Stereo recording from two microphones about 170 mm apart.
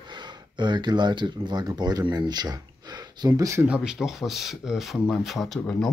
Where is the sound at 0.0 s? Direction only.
25° right (ahead or behind).